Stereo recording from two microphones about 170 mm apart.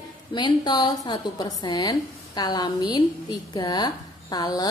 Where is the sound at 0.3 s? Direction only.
25° left (ahead or behind).